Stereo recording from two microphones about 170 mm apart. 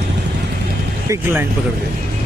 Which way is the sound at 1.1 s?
10° right (ahead or behind).